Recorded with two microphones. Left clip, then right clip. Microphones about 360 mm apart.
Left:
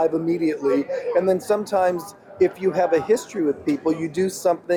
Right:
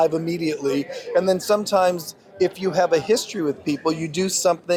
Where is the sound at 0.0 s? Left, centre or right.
Right.